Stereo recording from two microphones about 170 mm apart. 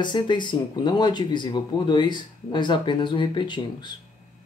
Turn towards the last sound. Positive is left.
turn(degrees=25)  # may be behind; listen again after turning